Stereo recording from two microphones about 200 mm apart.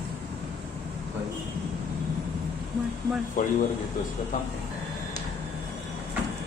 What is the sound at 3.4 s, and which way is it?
Speech, 40° left (ahead or behind).